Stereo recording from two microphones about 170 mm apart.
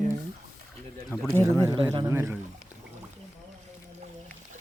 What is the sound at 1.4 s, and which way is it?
Speech, 20° right (ahead or behind).